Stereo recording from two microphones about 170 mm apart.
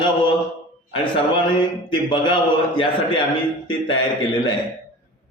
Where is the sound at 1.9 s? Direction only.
25° left (ahead or behind).